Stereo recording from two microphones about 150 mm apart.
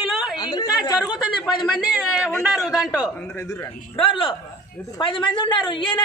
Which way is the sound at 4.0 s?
35° left (ahead or behind).